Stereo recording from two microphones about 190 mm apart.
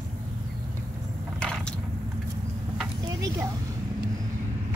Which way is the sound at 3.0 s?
20° right (ahead or behind).